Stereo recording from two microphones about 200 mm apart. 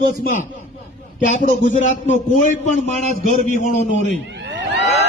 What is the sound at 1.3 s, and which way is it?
A man's voice, 40° left (ahead or behind).